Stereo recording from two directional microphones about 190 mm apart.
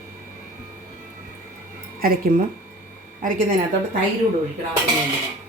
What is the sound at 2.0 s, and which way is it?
Speech, 45° right (ahead or behind).